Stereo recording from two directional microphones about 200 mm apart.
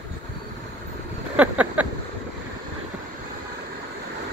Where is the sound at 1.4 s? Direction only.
5° right (ahead or behind).